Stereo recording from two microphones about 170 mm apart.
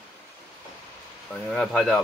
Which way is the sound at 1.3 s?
Centre (ahead or behind).